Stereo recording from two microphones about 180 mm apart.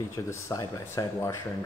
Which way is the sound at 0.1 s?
15° left (ahead or behind).